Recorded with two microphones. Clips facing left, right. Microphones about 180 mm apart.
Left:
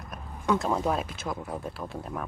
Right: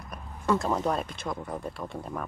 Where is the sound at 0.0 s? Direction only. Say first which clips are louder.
Even; centre (ahead or behind).